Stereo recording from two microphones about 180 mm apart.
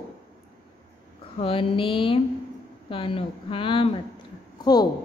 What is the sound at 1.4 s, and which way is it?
A woman's voice, 30° left (ahead or behind).